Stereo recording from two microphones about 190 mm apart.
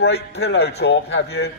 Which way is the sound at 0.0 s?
60° left (ahead or behind).